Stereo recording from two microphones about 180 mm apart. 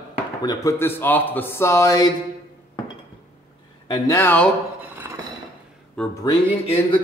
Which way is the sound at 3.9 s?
15° left (ahead or behind).